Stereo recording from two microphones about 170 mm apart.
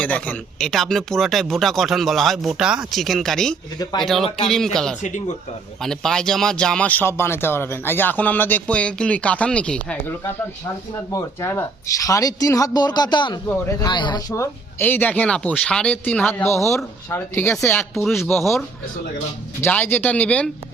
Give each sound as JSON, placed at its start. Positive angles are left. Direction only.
{"t": 0.0, "sound": "speech", "side_deg": 5}
{"t": 11.1, "sound": "speech", "side_deg": 15}
{"t": 17.9, "sound": "speech", "side_deg": 0}
{"t": 19.6, "sound": "speech", "side_deg": 10}